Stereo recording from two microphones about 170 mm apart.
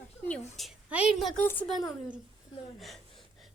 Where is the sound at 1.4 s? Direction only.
10° left (ahead or behind).